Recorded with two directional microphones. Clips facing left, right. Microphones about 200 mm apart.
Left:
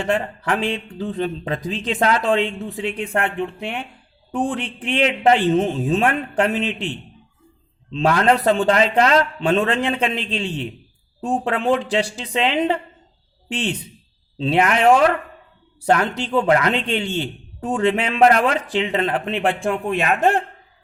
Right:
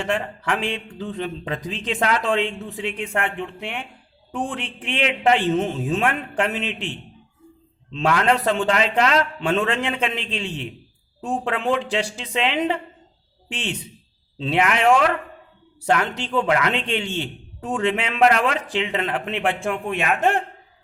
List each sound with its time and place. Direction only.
0.0 s speech: 35° left (ahead or behind)
7.9 s speech: 35° left (ahead or behind)